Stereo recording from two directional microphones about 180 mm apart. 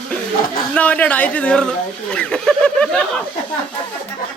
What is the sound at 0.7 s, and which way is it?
Speech, 10° left (ahead or behind).